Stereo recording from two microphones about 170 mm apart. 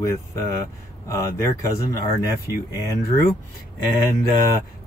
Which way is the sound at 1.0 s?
20° left (ahead or behind).